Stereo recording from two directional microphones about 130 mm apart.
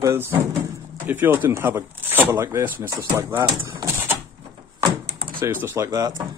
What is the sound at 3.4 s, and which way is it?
Speech, 35° right (ahead or behind).